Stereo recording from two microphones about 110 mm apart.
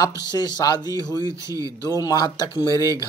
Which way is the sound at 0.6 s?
40° left (ahead or behind).